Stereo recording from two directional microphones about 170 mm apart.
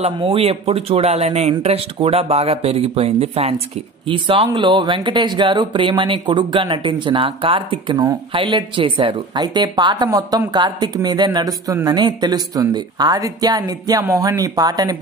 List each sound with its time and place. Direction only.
0.0 s speech: 30° right (ahead or behind)